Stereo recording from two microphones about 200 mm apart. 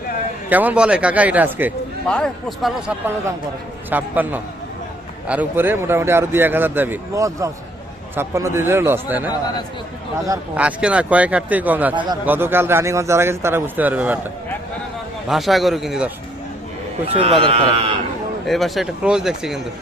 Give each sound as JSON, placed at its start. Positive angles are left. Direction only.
{"t": 0.5, "sound": "speech", "side_deg": -5}
{"t": 2.0, "sound": "speech", "side_deg": 5}
{"t": 10.6, "sound": "speech", "side_deg": -5}
{"t": 15.3, "sound": "speech", "side_deg": 0}
{"t": 17.1, "sound": "a man's voice", "side_deg": -30}
{"t": 18.4, "sound": "speech", "side_deg": 0}